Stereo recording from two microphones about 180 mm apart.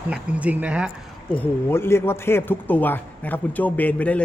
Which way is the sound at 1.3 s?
10° left (ahead or behind).